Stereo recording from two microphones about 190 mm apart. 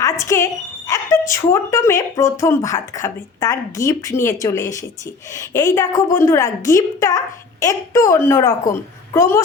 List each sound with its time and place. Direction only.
0.0 s a woman's voice: 15° left (ahead or behind)